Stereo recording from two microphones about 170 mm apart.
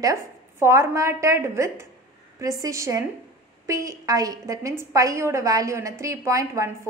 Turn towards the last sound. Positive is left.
turn(degrees=-20)  # may be behind; listen again after turning